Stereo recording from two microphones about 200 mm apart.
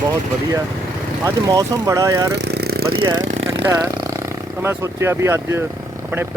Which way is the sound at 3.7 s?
15° right (ahead or behind).